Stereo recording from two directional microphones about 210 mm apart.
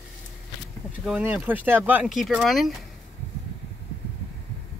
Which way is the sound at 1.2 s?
10° right (ahead or behind).